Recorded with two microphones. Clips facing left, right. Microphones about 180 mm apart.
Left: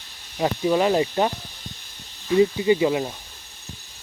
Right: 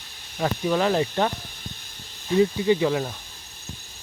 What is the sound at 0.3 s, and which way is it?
Speech, 10° left (ahead or behind).